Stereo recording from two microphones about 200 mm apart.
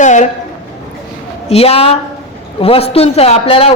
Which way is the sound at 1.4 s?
30° left (ahead or behind).